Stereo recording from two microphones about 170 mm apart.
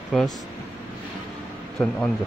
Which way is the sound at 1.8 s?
5° left (ahead or behind).